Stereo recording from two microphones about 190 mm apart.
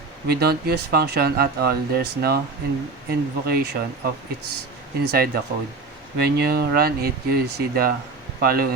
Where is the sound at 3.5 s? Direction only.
55° right (ahead or behind).